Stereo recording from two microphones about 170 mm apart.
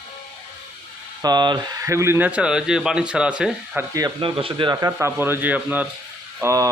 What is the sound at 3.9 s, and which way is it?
Speech, 25° right (ahead or behind).